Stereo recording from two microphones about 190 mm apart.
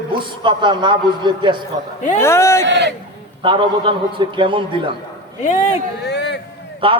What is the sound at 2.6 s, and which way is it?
Speech, 65° right (ahead or behind).